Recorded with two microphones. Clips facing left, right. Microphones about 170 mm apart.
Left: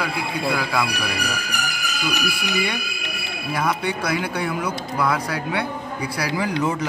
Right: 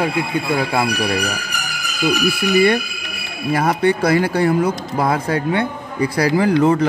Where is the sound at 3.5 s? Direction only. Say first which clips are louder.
Right 7 dB; 55° right (ahead or behind).